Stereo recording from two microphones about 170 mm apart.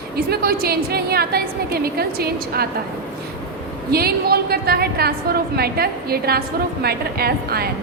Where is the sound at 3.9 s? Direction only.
65° right (ahead or behind).